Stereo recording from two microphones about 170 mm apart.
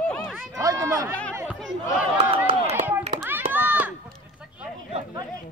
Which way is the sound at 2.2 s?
30° right (ahead or behind).